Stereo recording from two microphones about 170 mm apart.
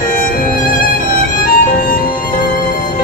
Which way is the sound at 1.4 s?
55° left (ahead or behind).